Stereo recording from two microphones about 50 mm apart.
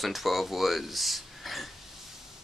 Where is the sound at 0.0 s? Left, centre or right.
Centre.